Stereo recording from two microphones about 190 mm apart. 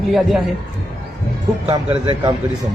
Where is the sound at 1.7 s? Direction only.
25° right (ahead or behind).